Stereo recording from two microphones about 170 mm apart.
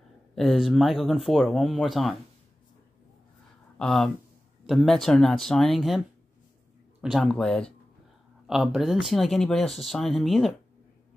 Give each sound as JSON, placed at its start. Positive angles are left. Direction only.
{"t": 0.4, "sound": "speech", "side_deg": 0}
{"t": 3.7, "sound": "speech", "side_deg": 5}